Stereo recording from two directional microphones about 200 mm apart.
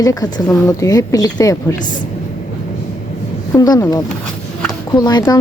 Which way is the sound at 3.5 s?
20° left (ahead or behind).